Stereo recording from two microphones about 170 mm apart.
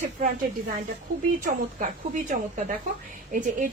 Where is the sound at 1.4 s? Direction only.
50° right (ahead or behind).